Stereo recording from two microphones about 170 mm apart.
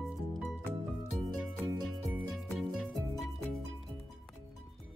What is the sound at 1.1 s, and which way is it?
Music, centre (ahead or behind).